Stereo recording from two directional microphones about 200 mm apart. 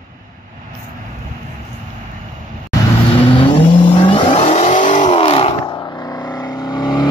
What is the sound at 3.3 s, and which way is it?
Vehicle, 25° left (ahead or behind).